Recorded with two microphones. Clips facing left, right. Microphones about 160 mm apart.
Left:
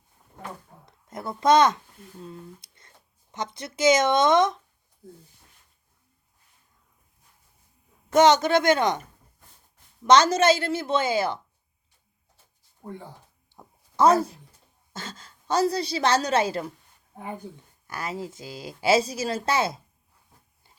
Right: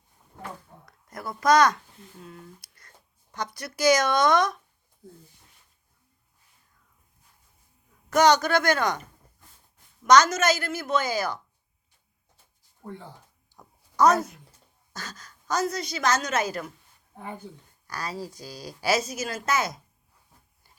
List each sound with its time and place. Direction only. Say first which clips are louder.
0.9 s a child's voice: left 2 dB; 25° left (ahead or behind)
2.2 s a sound: left 5 dB; 25° left (ahead or behind)
3.3 s a woman's voice: left 1 dB; 25° left (ahead or behind)
8.1 s a woman's voice: left 2 dB; 25° left (ahead or behind)
10.0 s a woman's voice: left 1 dB; 30° left (ahead or behind)
13.6 s a sound: left 1 dB; 25° left (ahead or behind)
14.9 s a woman's voice: left 2 dB; 25° left (ahead or behind)
17.8 s a woman's voice: left 2 dB; 20° left (ahead or behind)